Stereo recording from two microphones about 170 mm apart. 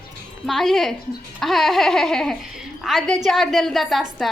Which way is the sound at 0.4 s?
Centre (ahead or behind).